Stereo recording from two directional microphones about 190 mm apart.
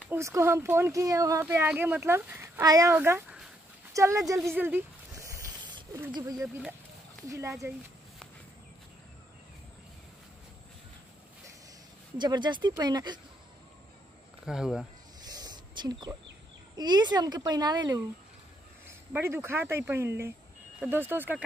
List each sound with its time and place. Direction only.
0.1 s speech: 15° right (ahead or behind)
4.4 s a sound: 5° right (ahead or behind)
6.1 s speech: 15° right (ahead or behind)
6.4 s speech: 5° right (ahead or behind)
7.2 s speech: 15° right (ahead or behind)
12.2 s a child's voice: 25° right (ahead or behind)
14.4 s speech: 5° right (ahead or behind)
15.2 s a sound: 20° right (ahead or behind)
16.7 s a child's voice: 20° right (ahead or behind)